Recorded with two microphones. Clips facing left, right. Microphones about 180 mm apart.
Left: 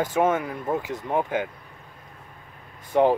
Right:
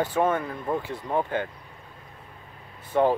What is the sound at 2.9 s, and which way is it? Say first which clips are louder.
Speech: left 2 dB; 15° left (ahead or behind).